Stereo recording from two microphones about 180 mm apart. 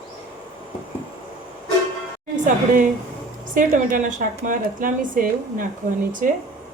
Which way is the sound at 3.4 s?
50° right (ahead or behind).